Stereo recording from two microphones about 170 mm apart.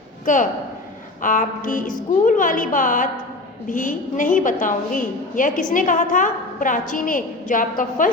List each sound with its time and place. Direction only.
0.3 s a woman's voice: 50° left (ahead or behind)